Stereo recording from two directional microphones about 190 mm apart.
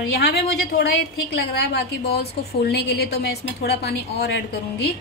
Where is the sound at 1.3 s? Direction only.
60° left (ahead or behind).